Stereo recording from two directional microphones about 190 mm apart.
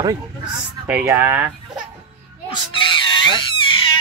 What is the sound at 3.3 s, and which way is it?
Cat, 25° left (ahead or behind).